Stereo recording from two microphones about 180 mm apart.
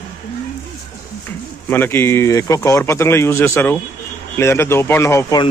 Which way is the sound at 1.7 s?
10° left (ahead or behind).